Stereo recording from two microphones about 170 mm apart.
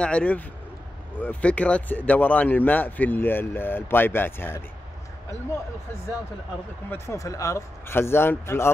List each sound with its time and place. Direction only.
0.0 s speech: 10° left (ahead or behind)
6.9 s speech: 15° left (ahead or behind)